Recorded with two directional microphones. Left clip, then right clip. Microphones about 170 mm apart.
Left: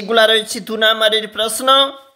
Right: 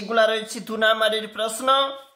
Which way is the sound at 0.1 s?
35° left (ahead or behind).